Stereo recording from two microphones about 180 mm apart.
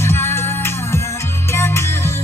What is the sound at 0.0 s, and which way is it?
Music, 15° left (ahead or behind).